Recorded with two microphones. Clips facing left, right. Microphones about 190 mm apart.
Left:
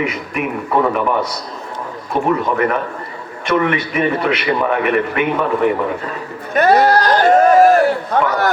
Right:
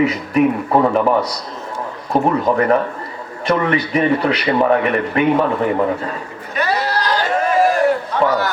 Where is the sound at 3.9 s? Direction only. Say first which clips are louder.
Right 1 dB; 35° right (ahead or behind).